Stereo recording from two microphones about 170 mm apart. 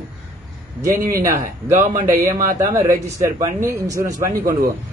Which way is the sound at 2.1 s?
15° right (ahead or behind).